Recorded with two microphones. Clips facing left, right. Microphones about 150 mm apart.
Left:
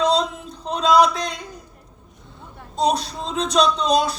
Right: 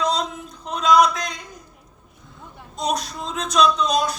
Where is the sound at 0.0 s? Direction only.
30° left (ahead or behind).